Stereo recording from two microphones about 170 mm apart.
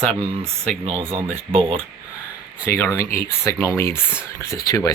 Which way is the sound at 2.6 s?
15° left (ahead or behind).